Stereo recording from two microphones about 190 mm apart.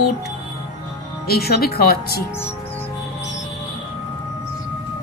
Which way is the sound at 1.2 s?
55° left (ahead or behind).